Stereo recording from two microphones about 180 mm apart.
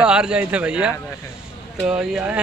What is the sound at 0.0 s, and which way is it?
Speech, 5° right (ahead or behind).